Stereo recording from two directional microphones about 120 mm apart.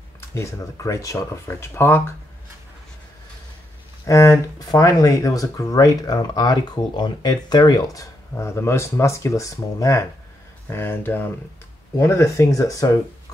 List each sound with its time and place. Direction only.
0.2 s speech: 25° left (ahead or behind)
4.0 s speech: 25° left (ahead or behind)